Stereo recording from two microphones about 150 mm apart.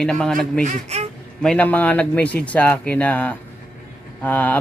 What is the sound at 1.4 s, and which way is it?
Speech, 10° left (ahead or behind).